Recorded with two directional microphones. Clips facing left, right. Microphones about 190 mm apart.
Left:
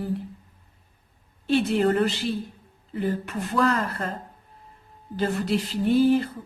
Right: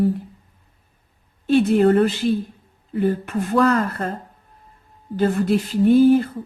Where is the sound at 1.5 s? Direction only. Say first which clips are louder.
Right 6 dB; 45° right (ahead or behind).